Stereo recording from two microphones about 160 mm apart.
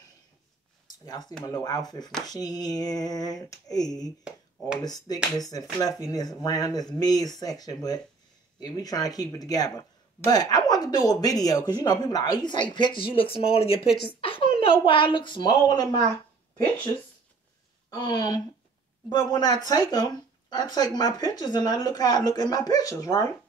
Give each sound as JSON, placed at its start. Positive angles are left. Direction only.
{"t": 1.4, "sound": "speech", "side_deg": 25}
{"t": 17.8, "sound": "speech", "side_deg": 25}